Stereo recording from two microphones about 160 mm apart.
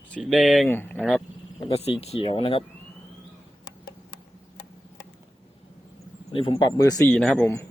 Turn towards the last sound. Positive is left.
turn(degrees=5)  # may be behind; listen again after turning